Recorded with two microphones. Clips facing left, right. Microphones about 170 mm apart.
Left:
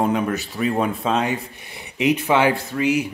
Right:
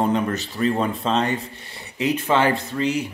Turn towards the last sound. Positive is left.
turn(degrees=10)  # may be behind; listen again after turning